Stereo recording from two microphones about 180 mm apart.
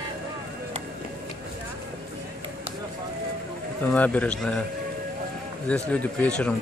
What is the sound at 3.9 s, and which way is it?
Speech, 10° left (ahead or behind).